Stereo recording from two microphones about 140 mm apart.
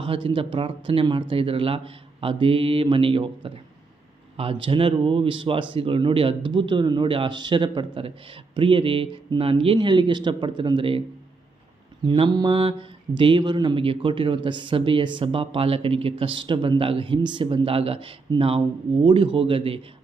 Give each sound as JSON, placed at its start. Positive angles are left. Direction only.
{"t": 0.0, "sound": "mantra", "side_deg": -40}
{"t": 12.0, "sound": "mantra", "side_deg": -35}